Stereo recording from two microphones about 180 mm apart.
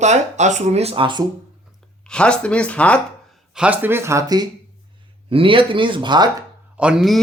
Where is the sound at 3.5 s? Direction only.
5° right (ahead or behind).